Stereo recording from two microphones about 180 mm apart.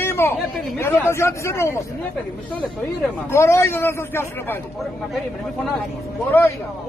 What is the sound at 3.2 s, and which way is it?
A man's voice, 15° left (ahead or behind).